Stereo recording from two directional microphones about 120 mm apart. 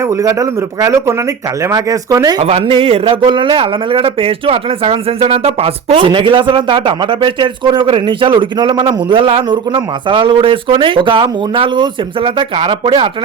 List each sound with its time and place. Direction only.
0.1 s speech: 25° right (ahead or behind)
1.6 s speech: 30° right (ahead or behind)
2.4 s a man's voice: 50° right (ahead or behind)